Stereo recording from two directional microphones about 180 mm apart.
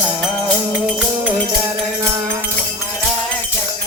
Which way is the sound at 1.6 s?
15° right (ahead or behind).